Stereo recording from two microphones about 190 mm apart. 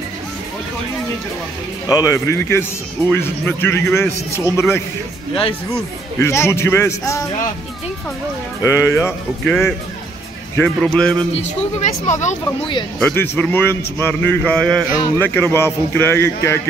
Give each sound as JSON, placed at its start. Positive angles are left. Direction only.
{"t": 1.9, "sound": "a man's voice", "side_deg": 15}
{"t": 6.1, "sound": "a man's voice", "side_deg": 15}
{"t": 8.6, "sound": "a man's voice", "side_deg": 15}
{"t": 11.3, "sound": "speech", "side_deg": 40}
{"t": 13.0, "sound": "a man's voice", "side_deg": 10}